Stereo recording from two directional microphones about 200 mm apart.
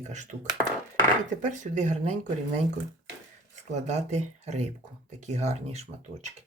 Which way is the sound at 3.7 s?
35° right (ahead or behind).